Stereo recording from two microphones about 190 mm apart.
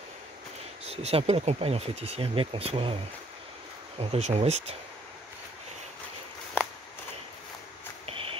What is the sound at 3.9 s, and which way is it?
Speech, 35° right (ahead or behind).